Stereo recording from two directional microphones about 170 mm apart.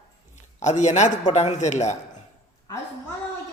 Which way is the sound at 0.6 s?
45° left (ahead or behind).